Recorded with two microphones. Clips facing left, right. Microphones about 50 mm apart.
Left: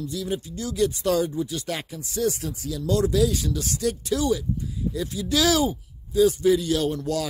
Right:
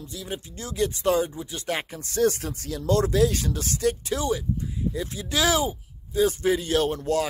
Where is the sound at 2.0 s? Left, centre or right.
Right.